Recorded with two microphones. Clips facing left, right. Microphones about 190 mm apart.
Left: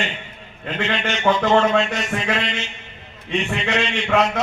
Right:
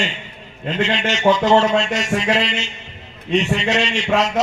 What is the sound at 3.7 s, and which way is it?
Speech, 55° left (ahead or behind).